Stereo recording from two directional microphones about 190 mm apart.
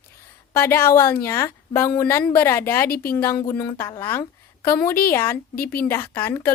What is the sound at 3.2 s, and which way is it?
Speech, 10° left (ahead or behind).